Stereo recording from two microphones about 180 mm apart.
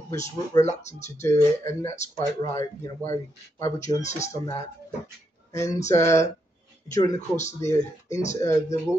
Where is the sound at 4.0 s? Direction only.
40° left (ahead or behind).